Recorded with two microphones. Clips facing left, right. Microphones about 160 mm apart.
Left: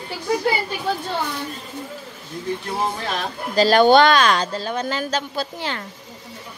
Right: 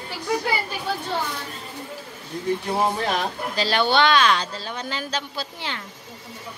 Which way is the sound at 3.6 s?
45° left (ahead or behind).